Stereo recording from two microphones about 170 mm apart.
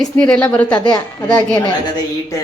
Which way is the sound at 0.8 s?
25° left (ahead or behind).